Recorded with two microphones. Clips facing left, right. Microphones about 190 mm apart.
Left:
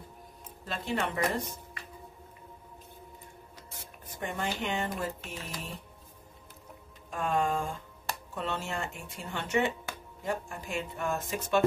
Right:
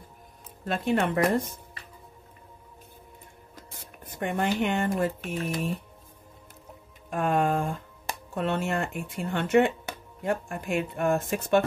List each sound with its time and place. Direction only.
0.7 s speech: 55° right (ahead or behind)
4.0 s speech: 60° right (ahead or behind)
7.1 s speech: 60° right (ahead or behind)